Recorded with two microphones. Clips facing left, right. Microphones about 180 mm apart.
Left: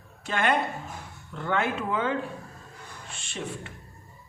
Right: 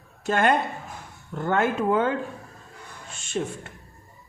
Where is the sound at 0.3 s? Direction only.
45° right (ahead or behind).